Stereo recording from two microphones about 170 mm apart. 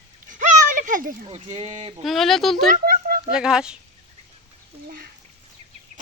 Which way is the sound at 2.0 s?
Centre (ahead or behind).